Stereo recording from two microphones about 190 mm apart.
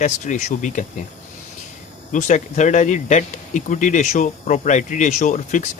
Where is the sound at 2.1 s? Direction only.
40° left (ahead or behind).